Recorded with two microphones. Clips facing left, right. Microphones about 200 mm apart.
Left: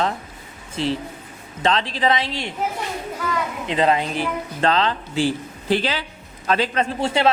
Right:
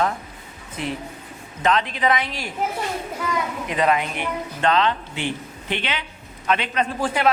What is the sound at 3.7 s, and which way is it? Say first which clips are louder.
A woman's voice: left 2 dB; 30° left (ahead or behind).